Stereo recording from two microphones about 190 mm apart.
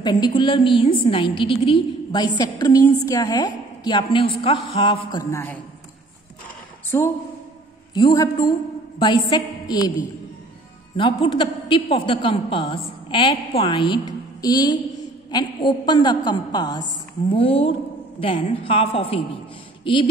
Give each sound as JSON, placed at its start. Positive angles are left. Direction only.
{"t": 0.0, "sound": "a woman's voice", "side_deg": 25}
{"t": 6.9, "sound": "a woman's voice", "side_deg": 10}
{"t": 11.0, "sound": "a woman's voice", "side_deg": 25}